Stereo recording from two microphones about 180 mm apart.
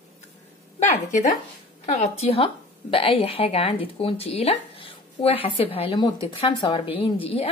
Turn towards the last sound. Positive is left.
turn(degrees=30)  # may be behind; listen again after turning